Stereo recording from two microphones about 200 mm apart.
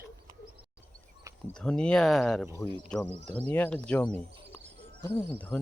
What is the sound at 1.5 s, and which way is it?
Speech, 5° left (ahead or behind).